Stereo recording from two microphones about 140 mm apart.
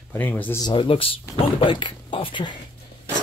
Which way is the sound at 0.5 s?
35° left (ahead or behind).